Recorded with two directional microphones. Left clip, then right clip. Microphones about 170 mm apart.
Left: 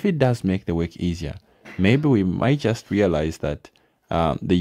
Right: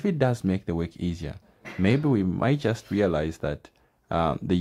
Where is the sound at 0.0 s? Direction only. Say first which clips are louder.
Left 4 dB; 35° left (ahead or behind).